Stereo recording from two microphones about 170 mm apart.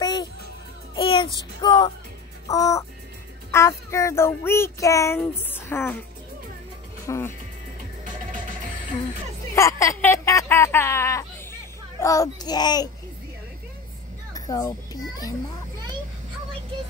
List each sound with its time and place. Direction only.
0.0 s music: 25° left (ahead or behind)
3.5 s child singing: 15° left (ahead or behind)
7.1 s music: 15° left (ahead or behind)
9.6 s a child's voice: 15° left (ahead or behind)
14.3 s music: 20° left (ahead or behind)